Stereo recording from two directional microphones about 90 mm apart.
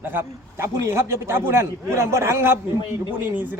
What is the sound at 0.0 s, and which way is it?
A man's voice, 25° right (ahead or behind).